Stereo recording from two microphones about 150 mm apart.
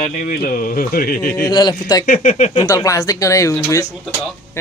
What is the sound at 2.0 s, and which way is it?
Speech, 60° left (ahead or behind).